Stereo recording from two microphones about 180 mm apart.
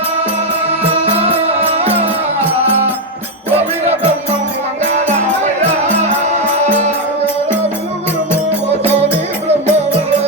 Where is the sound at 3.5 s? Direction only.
35° right (ahead or behind).